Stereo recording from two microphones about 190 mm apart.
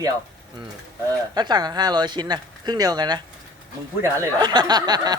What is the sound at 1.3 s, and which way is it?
Speech, 20° right (ahead or behind).